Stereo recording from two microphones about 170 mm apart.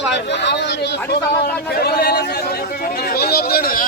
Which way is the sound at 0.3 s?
90° left.